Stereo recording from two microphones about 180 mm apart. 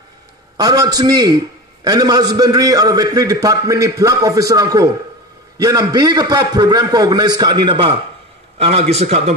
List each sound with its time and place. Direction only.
0.6 s a man's voice: 20° right (ahead or behind); by 9.3 s 35° right (ahead or behind)